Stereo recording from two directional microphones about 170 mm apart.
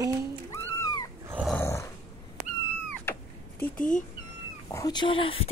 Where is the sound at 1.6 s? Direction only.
15° left (ahead or behind).